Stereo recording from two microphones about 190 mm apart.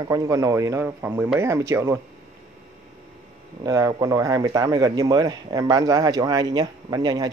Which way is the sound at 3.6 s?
20° right (ahead or behind).